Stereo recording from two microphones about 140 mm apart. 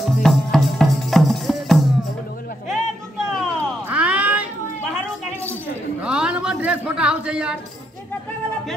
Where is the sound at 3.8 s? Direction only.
10° right (ahead or behind).